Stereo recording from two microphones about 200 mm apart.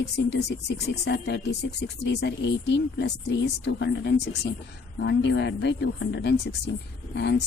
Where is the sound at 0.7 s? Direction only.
55° left (ahead or behind).